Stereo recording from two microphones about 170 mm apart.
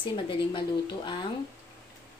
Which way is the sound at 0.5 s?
25° left (ahead or behind).